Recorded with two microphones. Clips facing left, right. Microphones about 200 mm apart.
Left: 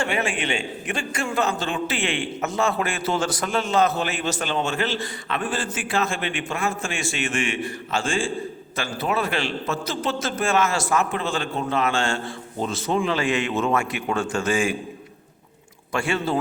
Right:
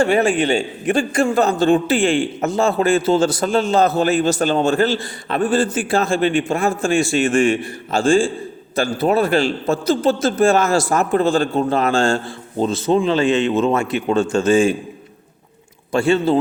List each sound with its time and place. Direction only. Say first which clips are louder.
0.0 s a man's voice: right 10 dB; 35° right (ahead or behind)
1.9 s a man's voice: right 10 dB; 45° right (ahead or behind)
2.4 s a man's voice: right 4 dB; 30° right (ahead or behind)
15.9 s a man's voice: right 8 dB; 25° right (ahead or behind)